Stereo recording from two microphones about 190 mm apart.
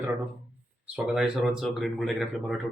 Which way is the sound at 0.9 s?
5° right (ahead or behind).